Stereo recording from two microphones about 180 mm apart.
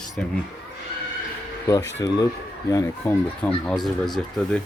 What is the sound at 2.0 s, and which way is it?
Speech, 20° left (ahead or behind).